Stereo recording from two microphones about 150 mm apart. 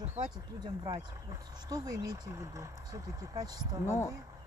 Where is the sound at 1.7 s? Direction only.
25° right (ahead or behind).